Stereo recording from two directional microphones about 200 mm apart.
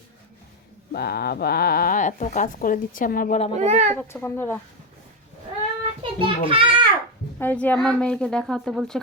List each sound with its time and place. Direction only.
0.9 s speech: 50° left (ahead or behind)
3.5 s a child's voice: 35° right (ahead or behind)
3.9 s speech: 10° left (ahead or behind)
6.0 s a child's voice: 25° right (ahead or behind)
7.3 s a woman's voice: 10° left (ahead or behind)